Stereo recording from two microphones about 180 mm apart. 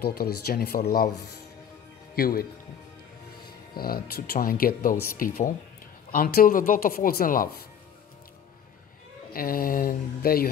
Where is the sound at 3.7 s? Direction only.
55° left (ahead or behind).